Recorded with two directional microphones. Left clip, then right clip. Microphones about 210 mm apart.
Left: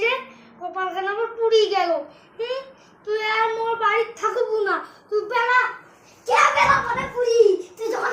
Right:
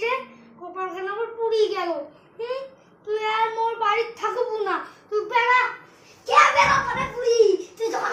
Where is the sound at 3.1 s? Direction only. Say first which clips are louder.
Left 2 dB; 15° right (ahead or behind).